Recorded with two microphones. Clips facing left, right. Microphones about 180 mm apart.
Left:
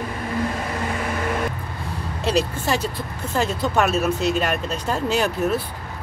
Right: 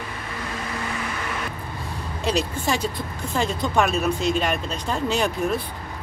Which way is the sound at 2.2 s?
5° left (ahead or behind).